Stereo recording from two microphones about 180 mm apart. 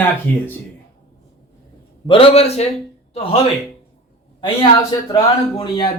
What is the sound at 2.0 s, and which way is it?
Speech, 30° left (ahead or behind).